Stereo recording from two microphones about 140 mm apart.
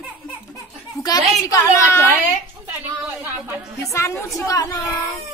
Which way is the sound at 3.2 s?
25° right (ahead or behind).